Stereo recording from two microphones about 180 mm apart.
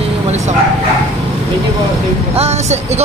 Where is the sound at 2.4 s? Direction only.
35° right (ahead or behind).